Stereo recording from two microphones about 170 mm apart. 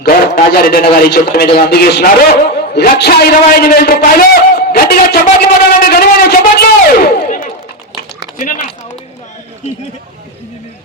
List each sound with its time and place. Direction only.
0.0 s a man's voice: 65° left (ahead or behind)